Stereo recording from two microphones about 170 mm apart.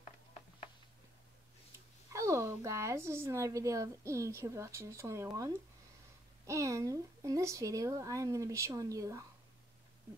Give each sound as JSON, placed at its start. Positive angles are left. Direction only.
{"t": 2.1, "sound": "a woman's voice", "side_deg": -15}